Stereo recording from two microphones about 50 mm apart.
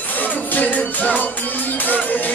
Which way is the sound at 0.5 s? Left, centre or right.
Left.